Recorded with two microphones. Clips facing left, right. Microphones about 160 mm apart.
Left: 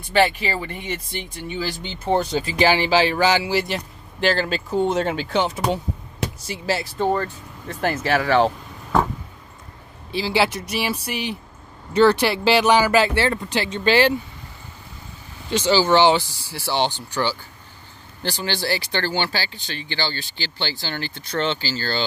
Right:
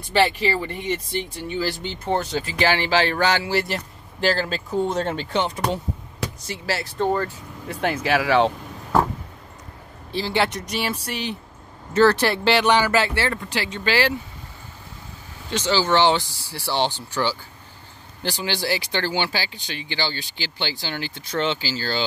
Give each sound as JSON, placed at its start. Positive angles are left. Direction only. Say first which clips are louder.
{"t": 0.4, "sound": "speech", "louder": "right 3 dB", "side_deg": 10}
{"t": 2.0, "sound": "speech", "louder": "left 3 dB", "side_deg": 15}
{"t": 6.4, "sound": "speech", "louder": "left 3 dB", "side_deg": 15}
{"t": 7.2, "sound": "speech", "louder": "even", "side_deg": 0}
{"t": 10.1, "sound": "speech", "louder": "left 2 dB", "side_deg": 5}
{"t": 15.5, "sound": "speech", "louder": "left 3 dB", "side_deg": 10}